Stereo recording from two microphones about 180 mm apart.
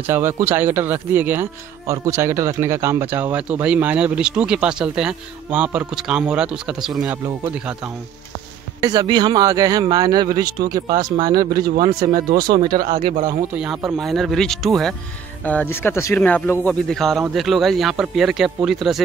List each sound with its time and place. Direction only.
0.0 s speech: 10° right (ahead or behind)
8.8 s a man's voice: 25° right (ahead or behind)
12.3 s speech: 55° right (ahead or behind)
12.6 s a man's voice: 25° right (ahead or behind)
13.8 s speech: centre (ahead or behind)